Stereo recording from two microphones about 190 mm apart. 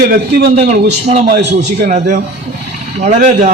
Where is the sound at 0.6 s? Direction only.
35° right (ahead or behind).